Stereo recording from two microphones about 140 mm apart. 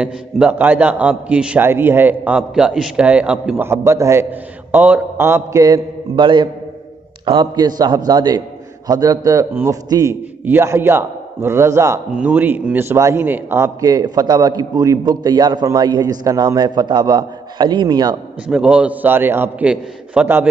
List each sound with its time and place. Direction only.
0.0 s a man's voice: 10° right (ahead or behind)
3.6 s a man's voice: 20° right (ahead or behind)
12.1 s a man's voice: 10° right (ahead or behind); by 18.1 s 30° right (ahead or behind)
18.5 s a man's voice: 5° right (ahead or behind)